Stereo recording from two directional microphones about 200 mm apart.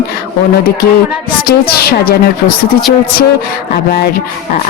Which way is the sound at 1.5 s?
50° left (ahead or behind).